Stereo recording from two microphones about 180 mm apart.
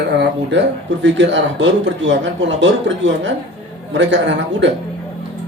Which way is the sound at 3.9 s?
85° right.